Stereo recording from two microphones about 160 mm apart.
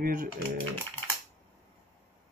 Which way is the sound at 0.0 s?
60° right (ahead or behind).